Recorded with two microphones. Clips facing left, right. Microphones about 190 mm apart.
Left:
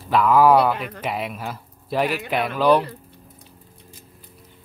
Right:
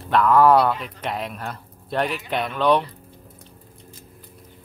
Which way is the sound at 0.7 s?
60° left (ahead or behind).